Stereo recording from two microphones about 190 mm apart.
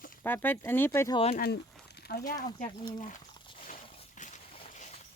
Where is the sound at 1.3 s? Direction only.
55° left (ahead or behind).